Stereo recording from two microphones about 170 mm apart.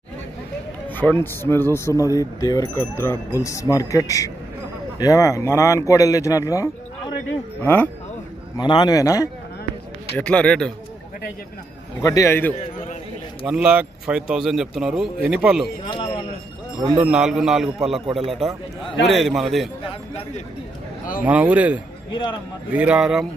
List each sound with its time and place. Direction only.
0.8 s a sound: 10° left (ahead or behind)
1.2 s speech: 15° left (ahead or behind)
8.5 s speech: 25° left (ahead or behind)
10.1 s speech: 5° left (ahead or behind)
12.0 s speech: 20° left (ahead or behind)
13.5 s speech: 5° right (ahead or behind)
17.0 s speech: 5° right (ahead or behind)
19.9 s speech: 35° left (ahead or behind)
21.2 s speech: 10° right (ahead or behind)
22.1 s speech: 25° left (ahead or behind)
22.7 s speech: 5° right (ahead or behind)